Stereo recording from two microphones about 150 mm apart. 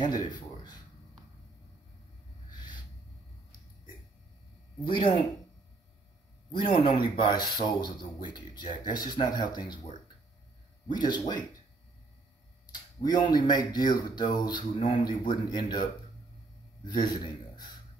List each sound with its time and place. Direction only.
2.5 s a sound: 30° left (ahead or behind)
4.8 s speech: 35° left (ahead or behind)
6.5 s speech: 35° left (ahead or behind)
7.0 s speech: 85° left
7.5 s speech: 30° left (ahead or behind)
13.0 s speech: 30° left (ahead or behind)
16.8 s a man's voice: 30° left (ahead or behind)